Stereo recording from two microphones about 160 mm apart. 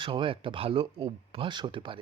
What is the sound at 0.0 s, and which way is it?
A man's voice, 35° right (ahead or behind).